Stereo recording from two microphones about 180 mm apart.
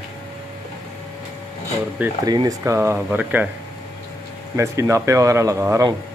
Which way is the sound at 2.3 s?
20° right (ahead or behind).